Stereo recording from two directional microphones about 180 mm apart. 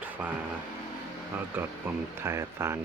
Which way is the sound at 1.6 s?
10° right (ahead or behind).